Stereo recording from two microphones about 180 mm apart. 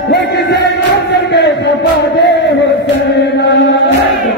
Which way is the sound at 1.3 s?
75° left (ahead or behind).